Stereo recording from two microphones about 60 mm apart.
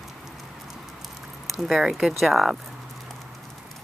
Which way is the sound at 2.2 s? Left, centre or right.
Centre.